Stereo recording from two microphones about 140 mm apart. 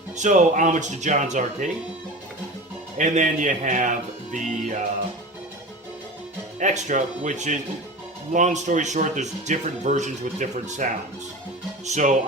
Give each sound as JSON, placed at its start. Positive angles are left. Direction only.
{"t": 0.2, "sound": "speech", "side_deg": -65}
{"t": 3.0, "sound": "speech", "side_deg": -60}
{"t": 6.6, "sound": "speech", "side_deg": -60}
{"t": 11.9, "sound": "speech", "side_deg": -60}